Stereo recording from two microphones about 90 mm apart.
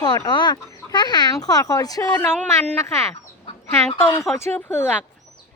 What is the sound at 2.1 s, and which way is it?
Speech, 25° left (ahead or behind).